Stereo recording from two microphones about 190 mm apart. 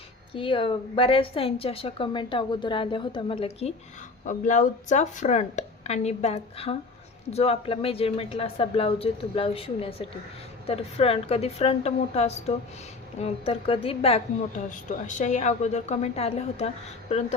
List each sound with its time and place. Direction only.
0.3 s a woman's voice: 30° left (ahead or behind)